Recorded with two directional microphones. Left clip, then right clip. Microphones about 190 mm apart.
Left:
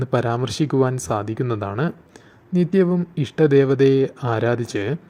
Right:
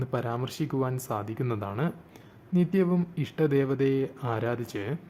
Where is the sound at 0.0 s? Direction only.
30° left (ahead or behind).